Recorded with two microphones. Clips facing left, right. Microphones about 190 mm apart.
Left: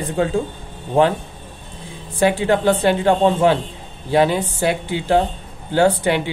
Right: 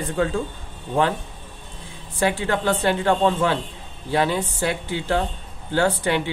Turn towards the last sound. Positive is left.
turn(degrees=15)  # may be behind; listen again after turning